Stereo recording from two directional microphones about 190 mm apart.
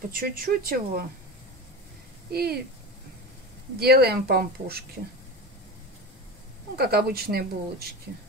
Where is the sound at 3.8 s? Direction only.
55° right (ahead or behind).